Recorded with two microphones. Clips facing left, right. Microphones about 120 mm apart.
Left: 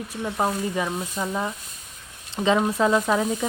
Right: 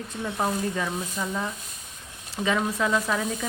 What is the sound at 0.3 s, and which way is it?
Speech, 15° left (ahead or behind).